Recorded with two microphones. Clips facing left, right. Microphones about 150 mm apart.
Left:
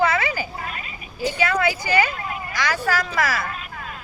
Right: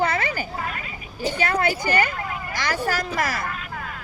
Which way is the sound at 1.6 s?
55° right (ahead or behind).